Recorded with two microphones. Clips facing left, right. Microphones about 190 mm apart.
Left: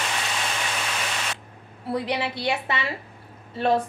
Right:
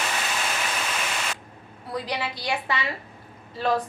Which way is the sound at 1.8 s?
25° left (ahead or behind).